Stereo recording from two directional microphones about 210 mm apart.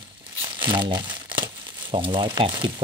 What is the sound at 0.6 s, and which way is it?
Speech, 25° right (ahead or behind).